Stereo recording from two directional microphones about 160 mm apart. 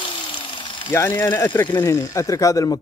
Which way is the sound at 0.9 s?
10° left (ahead or behind).